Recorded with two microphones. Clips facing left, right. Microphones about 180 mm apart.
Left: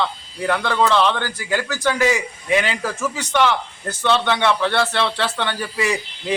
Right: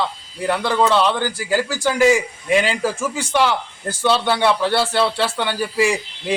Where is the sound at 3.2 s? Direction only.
10° right (ahead or behind).